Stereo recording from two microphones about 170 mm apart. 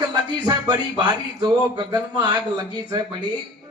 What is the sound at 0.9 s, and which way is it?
A man's voice, 25° right (ahead or behind).